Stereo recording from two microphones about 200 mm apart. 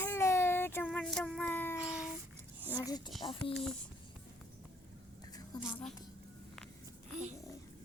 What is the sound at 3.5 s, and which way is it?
Speech, 5° left (ahead or behind).